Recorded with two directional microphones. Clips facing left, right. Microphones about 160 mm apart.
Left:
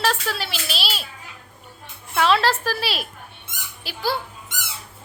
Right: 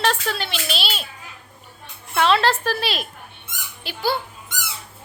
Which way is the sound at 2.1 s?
Centre (ahead or behind).